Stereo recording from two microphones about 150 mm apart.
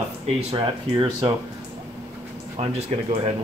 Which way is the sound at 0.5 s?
40° right (ahead or behind).